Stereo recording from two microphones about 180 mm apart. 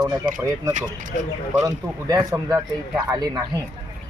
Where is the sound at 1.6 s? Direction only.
15° right (ahead or behind).